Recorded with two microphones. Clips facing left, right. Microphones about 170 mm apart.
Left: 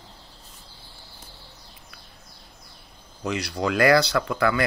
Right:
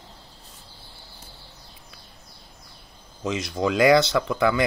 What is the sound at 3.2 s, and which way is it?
Speech, 20° right (ahead or behind).